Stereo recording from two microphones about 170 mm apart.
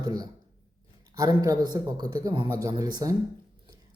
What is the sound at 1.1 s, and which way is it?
Speech, 20° right (ahead or behind).